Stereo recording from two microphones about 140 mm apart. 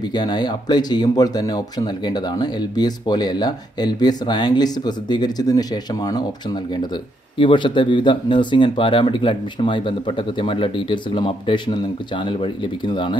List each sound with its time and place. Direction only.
0.1 s speech: 30° left (ahead or behind)